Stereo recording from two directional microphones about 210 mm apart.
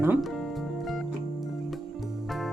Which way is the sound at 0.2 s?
Centre (ahead or behind).